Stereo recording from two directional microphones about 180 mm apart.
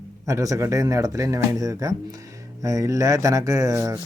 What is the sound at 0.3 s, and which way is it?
Speech, 20° right (ahead or behind).